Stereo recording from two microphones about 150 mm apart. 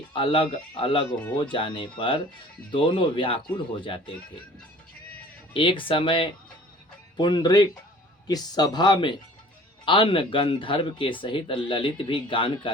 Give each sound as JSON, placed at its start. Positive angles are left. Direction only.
{"t": 0.1, "sound": "speech", "side_deg": 35}
{"t": 5.5, "sound": "speech", "side_deg": 35}